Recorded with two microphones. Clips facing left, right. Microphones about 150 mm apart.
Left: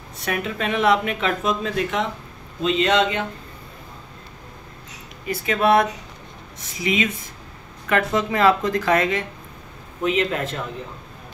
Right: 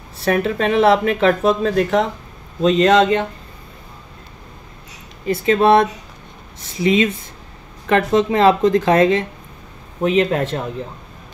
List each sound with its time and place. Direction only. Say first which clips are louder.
0.2 s speech: right 8 dB; 35° right (ahead or behind)
5.2 s speech: right 6 dB; 30° right (ahead or behind)